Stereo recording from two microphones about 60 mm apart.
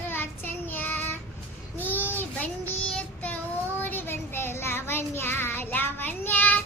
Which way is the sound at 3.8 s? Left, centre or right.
Left.